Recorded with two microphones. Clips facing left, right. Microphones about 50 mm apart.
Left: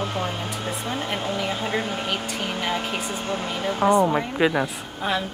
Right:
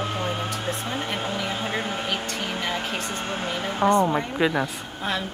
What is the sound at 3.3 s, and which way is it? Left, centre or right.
Speech, right.